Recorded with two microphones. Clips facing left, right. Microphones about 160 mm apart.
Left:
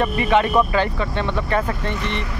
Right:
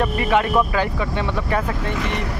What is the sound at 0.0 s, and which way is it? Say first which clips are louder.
Speech: left 1 dB; centre (ahead or behind).